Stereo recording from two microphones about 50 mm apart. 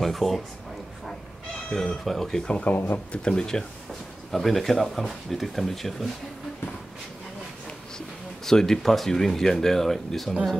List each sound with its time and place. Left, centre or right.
0.0 s speech: centre
1.7 s speech: centre
2.7 s speech: left
3.1 s speech: centre
4.3 s speech: centre
8.5 s speech: centre